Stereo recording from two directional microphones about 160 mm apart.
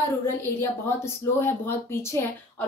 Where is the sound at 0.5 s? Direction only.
15° left (ahead or behind).